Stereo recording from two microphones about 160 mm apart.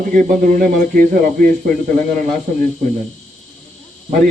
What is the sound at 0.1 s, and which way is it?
A man's voice, 55° right (ahead or behind).